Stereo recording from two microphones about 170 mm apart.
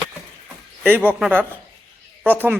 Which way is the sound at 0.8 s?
10° right (ahead or behind).